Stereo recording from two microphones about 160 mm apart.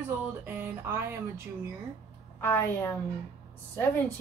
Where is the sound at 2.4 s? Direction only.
15° left (ahead or behind).